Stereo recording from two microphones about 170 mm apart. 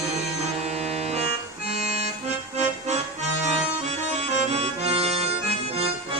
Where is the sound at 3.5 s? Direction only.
40° right (ahead or behind).